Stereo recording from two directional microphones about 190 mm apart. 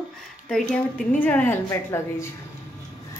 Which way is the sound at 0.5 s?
Centre (ahead or behind).